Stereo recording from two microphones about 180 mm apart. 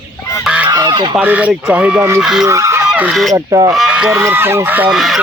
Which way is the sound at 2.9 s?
5° right (ahead or behind).